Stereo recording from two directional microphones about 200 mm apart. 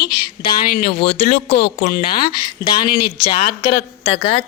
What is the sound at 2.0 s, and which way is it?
Speech, 50° left (ahead or behind).